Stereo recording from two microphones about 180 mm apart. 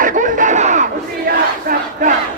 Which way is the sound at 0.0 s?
45° right (ahead or behind).